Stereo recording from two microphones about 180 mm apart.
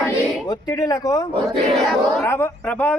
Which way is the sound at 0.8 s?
20° left (ahead or behind).